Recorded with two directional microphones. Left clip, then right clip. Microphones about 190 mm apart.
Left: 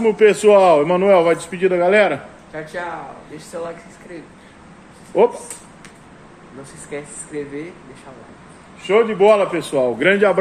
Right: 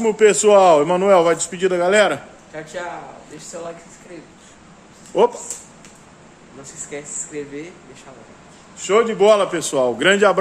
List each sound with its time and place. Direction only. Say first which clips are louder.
0.0 s a man's voice: left 1 dB; 15° right (ahead or behind)
2.5 s speech: left 2 dB; centre (ahead or behind)
3.3 s speech: left 3 dB; 10° left (ahead or behind)
5.1 s a man's voice: left 1 dB; 20° right (ahead or behind)
6.9 s a man's voice: left 1 dB; 5° right (ahead or behind)
8.8 s a man's voice: left 1 dB; 20° right (ahead or behind)